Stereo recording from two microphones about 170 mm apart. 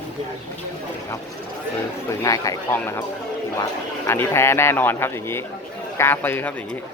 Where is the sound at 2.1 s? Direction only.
20° left (ahead or behind).